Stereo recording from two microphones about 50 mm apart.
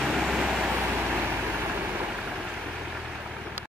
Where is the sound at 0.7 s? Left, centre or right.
Right.